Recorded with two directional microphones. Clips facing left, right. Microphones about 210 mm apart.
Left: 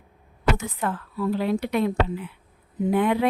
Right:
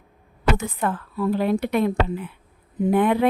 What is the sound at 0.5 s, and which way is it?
Speech, 55° right (ahead or behind).